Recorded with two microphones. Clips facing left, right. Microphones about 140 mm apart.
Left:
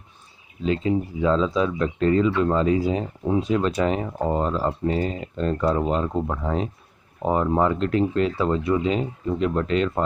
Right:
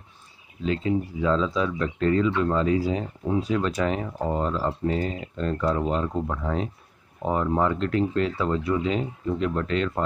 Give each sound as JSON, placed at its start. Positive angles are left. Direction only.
{"t": 0.7, "sound": "speech", "side_deg": 20}